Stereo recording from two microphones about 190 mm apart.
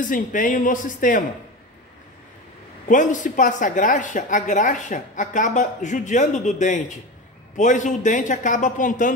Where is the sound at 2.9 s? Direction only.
45° left (ahead or behind).